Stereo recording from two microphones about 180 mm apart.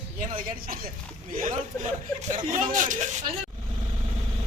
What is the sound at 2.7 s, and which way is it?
Speech, 45° right (ahead or behind).